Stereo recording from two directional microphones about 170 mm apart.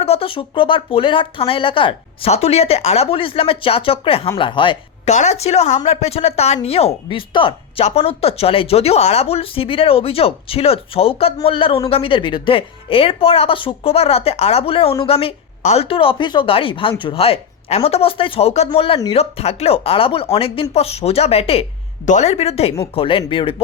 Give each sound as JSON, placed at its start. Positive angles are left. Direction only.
{"t": 0.0, "sound": "a woman's voice", "side_deg": 35}
{"t": 5.1, "sound": "a woman's voice", "side_deg": 40}